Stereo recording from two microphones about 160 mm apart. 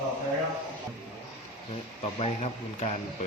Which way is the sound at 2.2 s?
40° left (ahead or behind).